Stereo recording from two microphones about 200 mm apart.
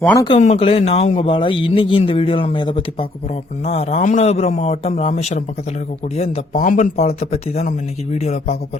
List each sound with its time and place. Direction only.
0.0 s speech: 10° left (ahead or behind)
0.3 s a man's voice: 30° left (ahead or behind)